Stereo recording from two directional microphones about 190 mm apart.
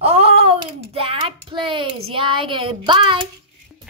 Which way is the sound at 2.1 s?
25° right (ahead or behind).